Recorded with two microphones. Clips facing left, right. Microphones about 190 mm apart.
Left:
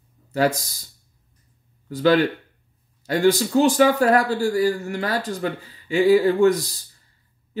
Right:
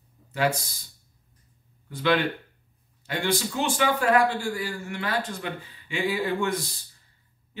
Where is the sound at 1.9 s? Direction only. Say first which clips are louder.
Left 6 dB; 40° left (ahead or behind).